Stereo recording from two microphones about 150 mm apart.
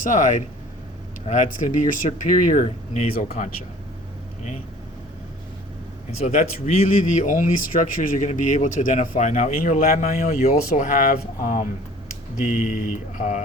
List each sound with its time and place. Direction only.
0.0 s speech: 55° left (ahead or behind)
6.2 s speech: 50° left (ahead or behind)
9.6 s speech: 70° left (ahead or behind)